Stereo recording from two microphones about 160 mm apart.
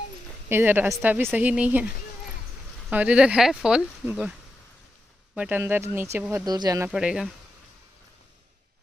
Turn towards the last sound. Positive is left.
turn(degrees=-5)  # may be behind; listen again after turning